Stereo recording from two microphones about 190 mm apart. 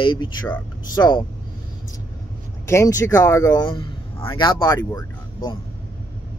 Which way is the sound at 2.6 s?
15° left (ahead or behind).